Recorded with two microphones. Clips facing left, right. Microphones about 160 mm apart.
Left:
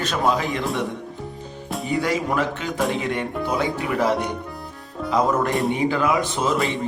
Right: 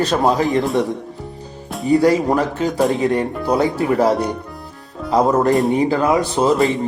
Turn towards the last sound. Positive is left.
turn(degrees=0)  # may be behind; listen again after turning